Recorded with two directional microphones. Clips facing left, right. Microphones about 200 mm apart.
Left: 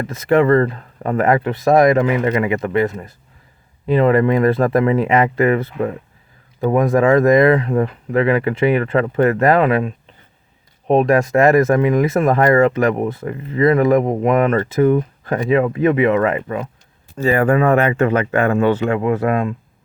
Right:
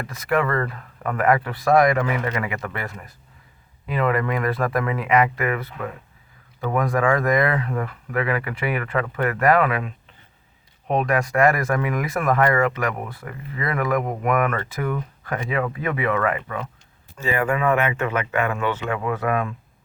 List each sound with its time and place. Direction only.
0.1 s speech: 25° left (ahead or behind)
17.2 s speech: 40° left (ahead or behind)